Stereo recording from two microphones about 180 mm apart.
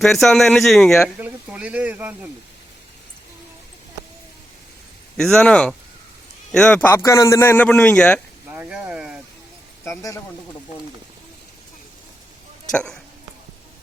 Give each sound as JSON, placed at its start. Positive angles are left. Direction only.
{"t": 0.0, "sound": "a man's voice", "side_deg": 0}
{"t": 5.1, "sound": "a man's voice", "side_deg": 5}
{"t": 8.4, "sound": "a sound", "side_deg": -10}
{"t": 9.8, "sound": "a man's voice", "side_deg": 15}
{"t": 12.7, "sound": "a man's voice", "side_deg": 5}